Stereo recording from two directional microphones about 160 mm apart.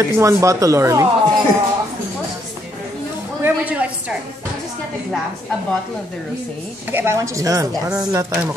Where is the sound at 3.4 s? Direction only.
10° right (ahead or behind).